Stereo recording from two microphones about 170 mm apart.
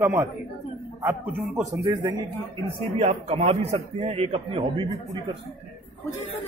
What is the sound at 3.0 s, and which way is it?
A man's voice, 40° right (ahead or behind).